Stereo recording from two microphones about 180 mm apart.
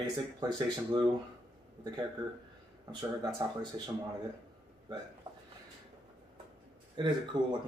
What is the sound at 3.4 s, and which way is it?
Speech, 25° right (ahead or behind).